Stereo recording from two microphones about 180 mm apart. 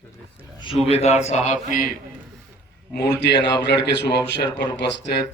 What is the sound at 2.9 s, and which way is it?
Speech, 70° left (ahead or behind).